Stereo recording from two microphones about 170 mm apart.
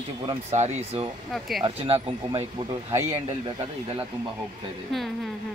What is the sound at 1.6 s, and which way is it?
Speech, 35° right (ahead or behind).